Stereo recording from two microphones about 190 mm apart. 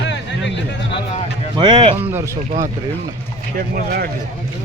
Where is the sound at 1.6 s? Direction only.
25° right (ahead or behind).